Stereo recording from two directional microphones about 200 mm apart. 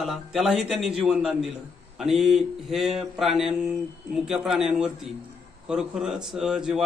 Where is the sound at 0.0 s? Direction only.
Centre (ahead or behind).